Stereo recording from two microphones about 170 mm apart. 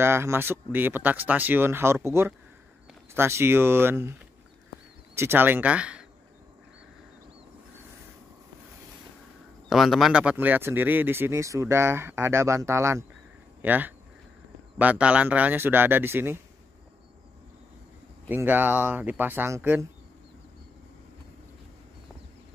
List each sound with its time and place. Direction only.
0.0 s speech: 15° right (ahead or behind)
5.1 s speech: 15° right (ahead or behind)
9.7 s speech: centre (ahead or behind)
18.3 s speech: 10° right (ahead or behind)